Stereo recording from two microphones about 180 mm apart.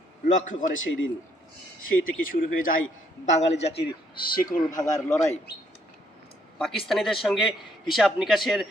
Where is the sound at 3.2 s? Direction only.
40° left (ahead or behind).